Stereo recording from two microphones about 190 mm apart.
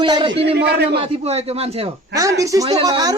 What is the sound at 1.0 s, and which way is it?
Speech, 30° right (ahead or behind).